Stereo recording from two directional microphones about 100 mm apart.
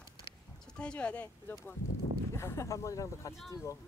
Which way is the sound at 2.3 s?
25° left (ahead or behind).